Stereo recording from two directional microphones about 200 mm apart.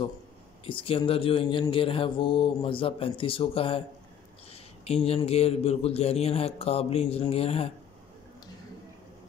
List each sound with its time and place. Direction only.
0.7 s speech: 25° left (ahead or behind)
4.8 s a man's voice: 30° left (ahead or behind)